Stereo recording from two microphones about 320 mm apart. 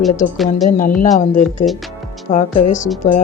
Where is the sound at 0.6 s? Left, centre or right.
Left.